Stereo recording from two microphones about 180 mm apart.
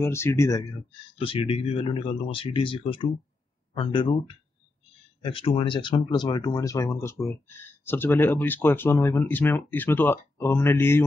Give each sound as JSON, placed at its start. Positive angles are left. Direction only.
{"t": 0.0, "sound": "speech", "side_deg": 15}
{"t": 1.1, "sound": "speech", "side_deg": 30}
{"t": 5.2, "sound": "speech", "side_deg": 30}